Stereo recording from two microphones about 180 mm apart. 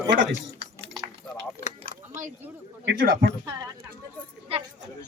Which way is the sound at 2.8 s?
60° right (ahead or behind).